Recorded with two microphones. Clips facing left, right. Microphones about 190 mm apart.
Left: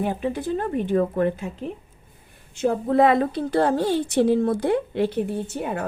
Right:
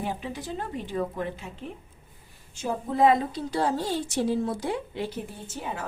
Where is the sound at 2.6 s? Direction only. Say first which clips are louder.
Left 6 dB; 65° left (ahead or behind).